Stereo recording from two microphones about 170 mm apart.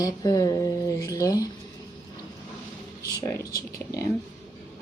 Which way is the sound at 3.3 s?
20° left (ahead or behind).